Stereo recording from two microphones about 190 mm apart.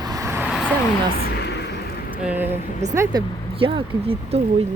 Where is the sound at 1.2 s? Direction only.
60° left (ahead or behind).